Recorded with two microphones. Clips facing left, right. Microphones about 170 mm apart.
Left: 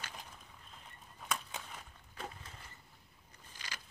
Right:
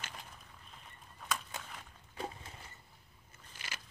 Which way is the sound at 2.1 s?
30° right (ahead or behind).